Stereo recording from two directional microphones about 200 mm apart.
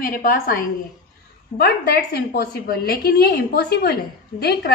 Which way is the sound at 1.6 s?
50° left (ahead or behind).